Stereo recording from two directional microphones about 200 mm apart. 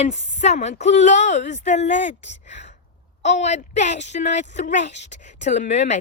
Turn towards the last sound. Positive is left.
turn(degrees=35)  # may be behind; listen again after turning